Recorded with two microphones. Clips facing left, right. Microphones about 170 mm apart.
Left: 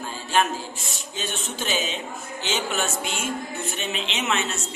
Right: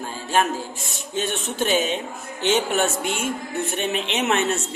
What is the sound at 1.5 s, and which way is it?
Speech, 55° right (ahead or behind).